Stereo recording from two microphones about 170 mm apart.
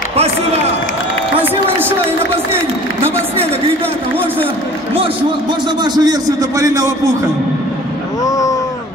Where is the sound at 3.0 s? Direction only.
35° right (ahead or behind).